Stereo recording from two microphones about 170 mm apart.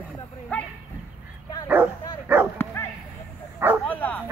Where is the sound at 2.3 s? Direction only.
10° right (ahead or behind).